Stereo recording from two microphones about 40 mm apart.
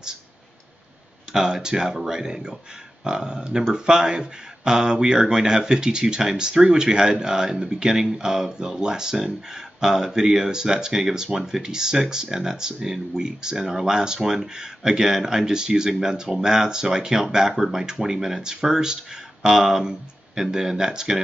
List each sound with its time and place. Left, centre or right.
1.3 s speech: centre